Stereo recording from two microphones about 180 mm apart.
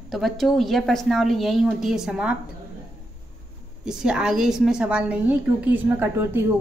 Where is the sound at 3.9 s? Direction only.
5° right (ahead or behind).